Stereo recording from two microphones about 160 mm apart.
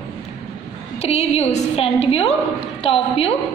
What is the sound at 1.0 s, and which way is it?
A woman's voice, 40° left (ahead or behind).